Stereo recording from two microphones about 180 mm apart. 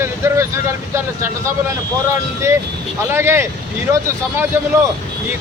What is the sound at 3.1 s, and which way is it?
Speech, 15° right (ahead or behind).